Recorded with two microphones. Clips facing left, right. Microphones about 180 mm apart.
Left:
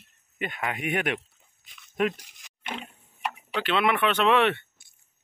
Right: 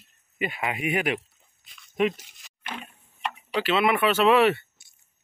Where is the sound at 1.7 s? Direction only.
Centre (ahead or behind).